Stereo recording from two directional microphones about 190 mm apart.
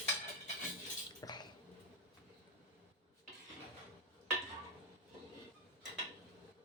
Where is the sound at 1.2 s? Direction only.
20° left (ahead or behind).